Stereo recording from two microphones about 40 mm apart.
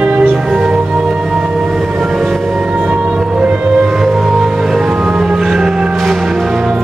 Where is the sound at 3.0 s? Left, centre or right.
Right.